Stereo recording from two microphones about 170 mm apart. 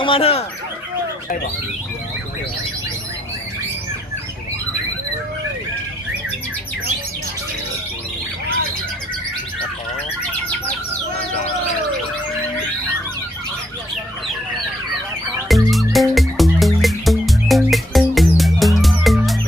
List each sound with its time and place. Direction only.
0.0 s speech: 35° left (ahead or behind)
15.4 s music: centre (ahead or behind)